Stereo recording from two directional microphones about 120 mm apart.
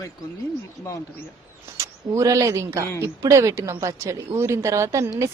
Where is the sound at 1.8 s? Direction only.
25° right (ahead or behind).